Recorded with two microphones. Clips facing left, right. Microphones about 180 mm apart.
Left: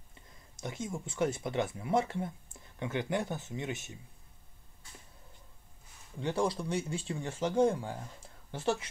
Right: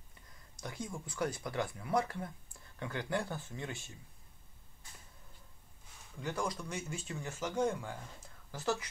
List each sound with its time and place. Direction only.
0.6 s speech: 25° left (ahead or behind)
6.1 s speech: 30° left (ahead or behind)